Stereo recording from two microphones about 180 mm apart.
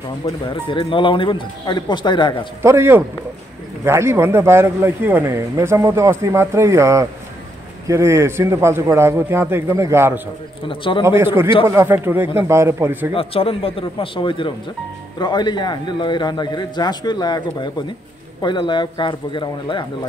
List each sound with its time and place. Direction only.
0.5 s a man's voice: 25° left (ahead or behind)
2.6 s speech: 15° right (ahead or behind)
10.7 s a man's voice: 30° left (ahead or behind)
11.1 s speech: 15° right (ahead or behind)
13.1 s a man's voice: 30° left (ahead or behind)